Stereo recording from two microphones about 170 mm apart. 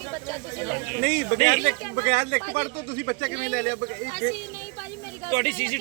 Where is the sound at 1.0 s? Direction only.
60° right (ahead or behind).